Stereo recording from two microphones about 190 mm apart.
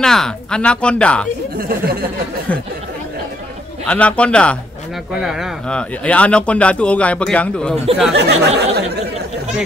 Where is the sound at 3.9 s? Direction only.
5° left (ahead or behind).